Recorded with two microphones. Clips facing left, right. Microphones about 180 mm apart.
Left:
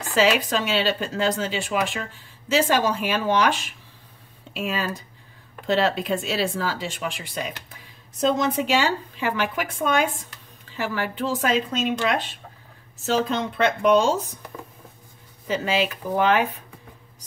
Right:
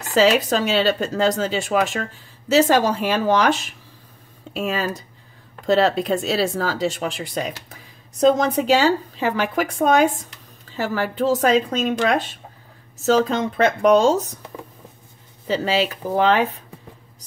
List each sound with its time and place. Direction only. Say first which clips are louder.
0.1 s speech: right 4 dB; 40° right (ahead or behind)
4.6 s speech: right 3 dB; 40° right (ahead or behind)
15.4 s speech: right 3 dB; 35° right (ahead or behind)